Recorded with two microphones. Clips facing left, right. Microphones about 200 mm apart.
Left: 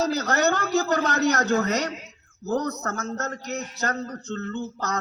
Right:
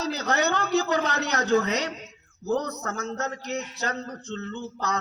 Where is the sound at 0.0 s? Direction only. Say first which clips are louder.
Left 3 dB; 45° left (ahead or behind).